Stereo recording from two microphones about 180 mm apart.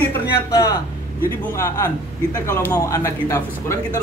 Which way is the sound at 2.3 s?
15° left (ahead or behind).